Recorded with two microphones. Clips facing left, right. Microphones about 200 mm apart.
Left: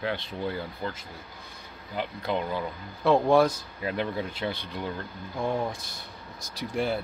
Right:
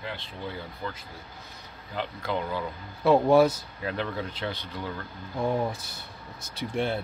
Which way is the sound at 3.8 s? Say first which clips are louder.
Left 2 dB; 15° left (ahead or behind).